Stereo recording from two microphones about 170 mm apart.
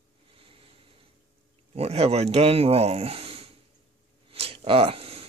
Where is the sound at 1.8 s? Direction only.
35° right (ahead or behind).